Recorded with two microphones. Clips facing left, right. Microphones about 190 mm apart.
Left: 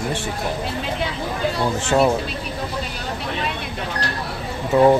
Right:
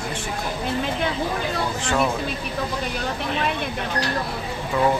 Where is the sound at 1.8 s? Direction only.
40° left (ahead or behind).